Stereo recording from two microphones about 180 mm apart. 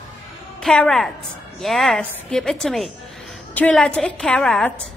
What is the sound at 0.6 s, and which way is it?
A woman's voice, 5° left (ahead or behind).